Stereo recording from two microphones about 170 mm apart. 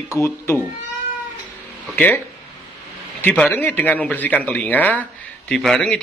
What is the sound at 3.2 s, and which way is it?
A man's voice, 10° left (ahead or behind).